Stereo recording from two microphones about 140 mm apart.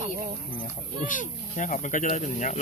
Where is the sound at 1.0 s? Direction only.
65° left (ahead or behind).